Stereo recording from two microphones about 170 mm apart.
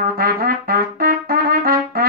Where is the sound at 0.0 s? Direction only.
60° right (ahead or behind).